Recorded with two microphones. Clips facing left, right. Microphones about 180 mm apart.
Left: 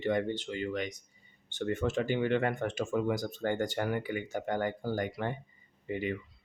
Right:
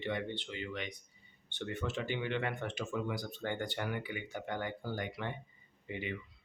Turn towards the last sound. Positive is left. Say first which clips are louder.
# left 7 dB
turn(degrees=40)  # may be behind; listen again after turning